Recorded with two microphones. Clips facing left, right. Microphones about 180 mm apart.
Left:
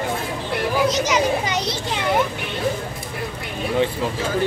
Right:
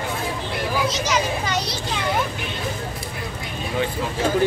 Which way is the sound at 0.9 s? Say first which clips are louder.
Left 4 dB; 20° left (ahead or behind).